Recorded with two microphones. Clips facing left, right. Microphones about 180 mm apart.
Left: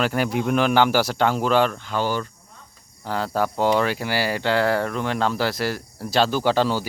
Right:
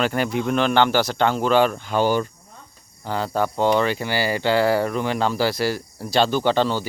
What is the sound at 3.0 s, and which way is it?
Speech, centre (ahead or behind).